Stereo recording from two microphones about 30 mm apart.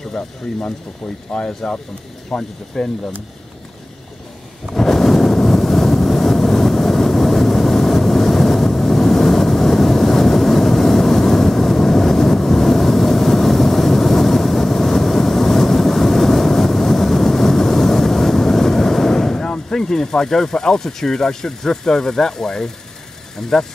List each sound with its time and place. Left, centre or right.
1.3 s speech: left
4.7 s vehicle: centre
19.7 s speech: centre